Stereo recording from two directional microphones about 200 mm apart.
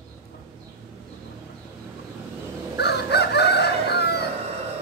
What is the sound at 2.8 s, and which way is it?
Chicken, 55° left (ahead or behind).